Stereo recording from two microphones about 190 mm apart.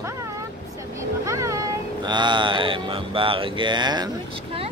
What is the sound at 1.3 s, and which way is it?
Speech, 15° right (ahead or behind).